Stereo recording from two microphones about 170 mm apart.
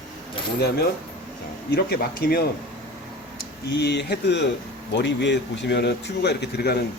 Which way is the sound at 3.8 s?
80° left.